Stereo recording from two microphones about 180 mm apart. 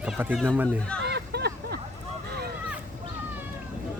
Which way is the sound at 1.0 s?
65° right (ahead or behind).